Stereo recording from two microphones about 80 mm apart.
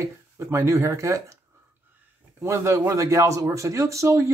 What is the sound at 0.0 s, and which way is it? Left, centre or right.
Speech, right.